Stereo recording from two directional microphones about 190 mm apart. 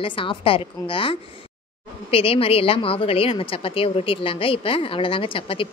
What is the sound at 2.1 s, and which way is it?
A woman's voice, 30° left (ahead or behind).